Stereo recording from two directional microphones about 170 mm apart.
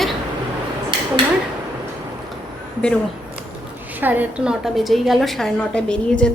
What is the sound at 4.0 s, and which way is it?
A woman's voice, 10° right (ahead or behind).